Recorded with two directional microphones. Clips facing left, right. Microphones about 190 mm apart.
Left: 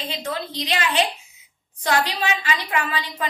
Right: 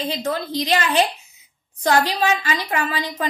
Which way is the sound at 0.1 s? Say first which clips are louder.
Right 5 dB; 45° right (ahead or behind).